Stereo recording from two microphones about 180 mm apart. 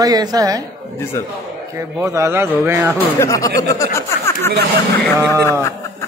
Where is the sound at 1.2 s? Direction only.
15° left (ahead or behind).